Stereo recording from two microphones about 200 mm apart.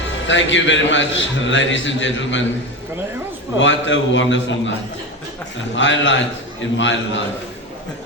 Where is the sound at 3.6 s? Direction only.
70° left (ahead or behind).